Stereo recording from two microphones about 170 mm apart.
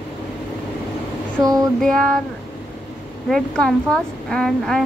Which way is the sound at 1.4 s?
20° right (ahead or behind).